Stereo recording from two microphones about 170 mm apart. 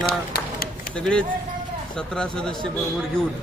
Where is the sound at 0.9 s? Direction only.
5° left (ahead or behind).